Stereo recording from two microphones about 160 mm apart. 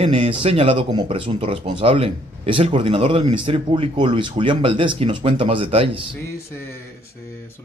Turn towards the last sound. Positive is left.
turn(degrees=-35)  # may be behind; listen again after turning